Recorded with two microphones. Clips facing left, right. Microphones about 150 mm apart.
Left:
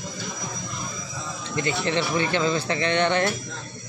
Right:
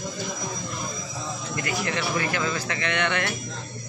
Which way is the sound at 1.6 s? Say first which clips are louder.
Left 4 dB; 25° left (ahead or behind).